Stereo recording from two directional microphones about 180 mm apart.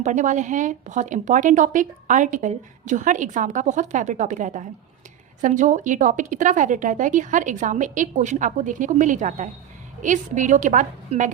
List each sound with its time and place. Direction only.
0.0 s a woman's voice: 45° right (ahead or behind)